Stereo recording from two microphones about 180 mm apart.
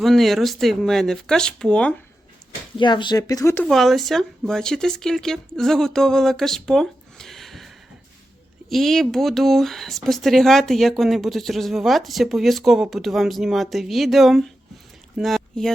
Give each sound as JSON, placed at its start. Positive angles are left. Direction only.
{"t": 0.0, "sound": "speech", "side_deg": 0}
{"t": 2.7, "sound": "speech", "side_deg": 25}
{"t": 3.5, "sound": "speech", "side_deg": 5}
{"t": 8.7, "sound": "speech", "side_deg": 0}